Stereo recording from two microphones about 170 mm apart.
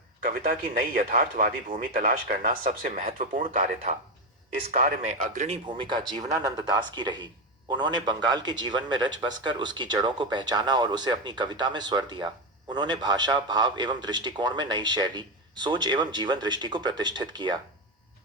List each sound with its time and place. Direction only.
0.4 s speech: 45° right (ahead or behind)
4.7 s speech: 50° right (ahead or behind)
5.6 s a man's voice: 30° right (ahead or behind)